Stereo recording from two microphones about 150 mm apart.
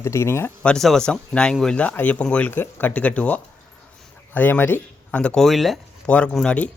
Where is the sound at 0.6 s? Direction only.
5° left (ahead or behind).